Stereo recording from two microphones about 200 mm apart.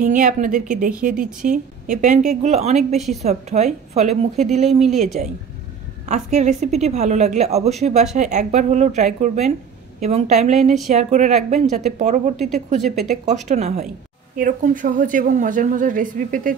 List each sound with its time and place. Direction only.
0.0 s a woman's voice: 40° right (ahead or behind)
12.8 s speech: centre (ahead or behind)
13.2 s a woman's voice: 35° right (ahead or behind)